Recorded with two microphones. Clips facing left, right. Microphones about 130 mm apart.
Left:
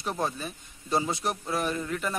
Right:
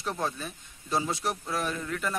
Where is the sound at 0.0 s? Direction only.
5° left (ahead or behind).